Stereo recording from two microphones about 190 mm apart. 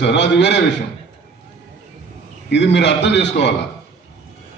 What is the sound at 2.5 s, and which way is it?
A man's voice, 65° left (ahead or behind).